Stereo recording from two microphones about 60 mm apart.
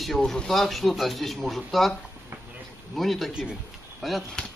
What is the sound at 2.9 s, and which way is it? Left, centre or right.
Speech, centre.